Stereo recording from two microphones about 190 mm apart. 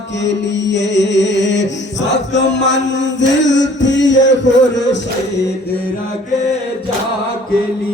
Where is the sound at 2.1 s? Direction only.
70° left (ahead or behind).